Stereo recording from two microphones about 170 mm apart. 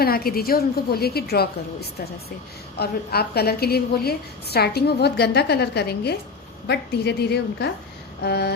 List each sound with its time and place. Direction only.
0.0 s a woman's voice: 65° left (ahead or behind)